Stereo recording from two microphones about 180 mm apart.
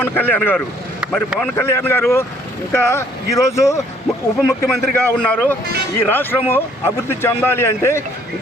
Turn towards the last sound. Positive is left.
turn(degrees=15)  # may be behind; listen again after turning